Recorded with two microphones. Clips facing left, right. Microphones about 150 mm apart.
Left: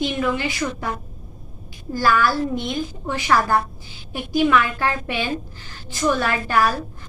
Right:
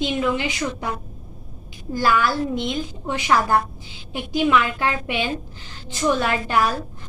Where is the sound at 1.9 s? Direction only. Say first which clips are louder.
Left 1 dB; 20° right (ahead or behind).